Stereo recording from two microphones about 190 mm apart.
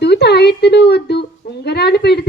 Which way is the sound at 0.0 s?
60° left (ahead or behind).